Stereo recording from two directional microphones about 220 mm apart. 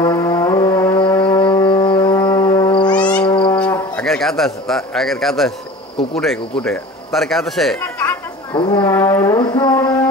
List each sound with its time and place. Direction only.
0.0 s brass instrument: 15° left (ahead or behind)
3.5 s speech: 5° left (ahead or behind)
8.5 s music: 20° left (ahead or behind)